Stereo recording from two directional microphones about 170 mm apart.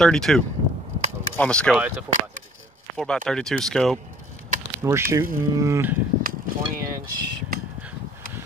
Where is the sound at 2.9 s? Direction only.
5° left (ahead or behind).